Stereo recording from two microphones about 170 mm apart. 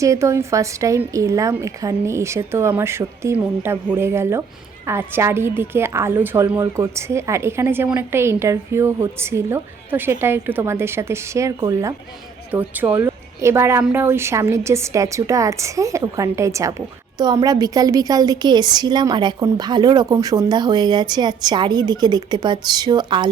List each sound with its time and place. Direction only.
0.0 s a woman's voice: 20° right (ahead or behind)